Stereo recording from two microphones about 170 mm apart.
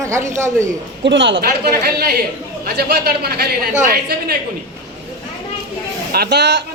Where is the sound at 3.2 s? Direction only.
65° right (ahead or behind).